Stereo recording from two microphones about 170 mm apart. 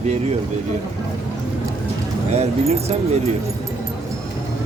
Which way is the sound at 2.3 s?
40° right (ahead or behind).